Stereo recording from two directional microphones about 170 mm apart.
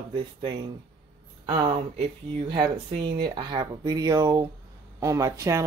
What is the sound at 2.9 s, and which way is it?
Speech, 25° right (ahead or behind).